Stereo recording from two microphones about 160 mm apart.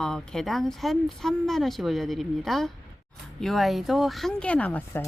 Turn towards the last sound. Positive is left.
turn(degrees=10)  # may be behind; listen again after turning